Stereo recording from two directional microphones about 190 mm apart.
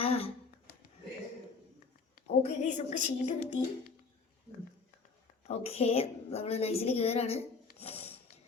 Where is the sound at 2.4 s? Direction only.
35° left (ahead or behind).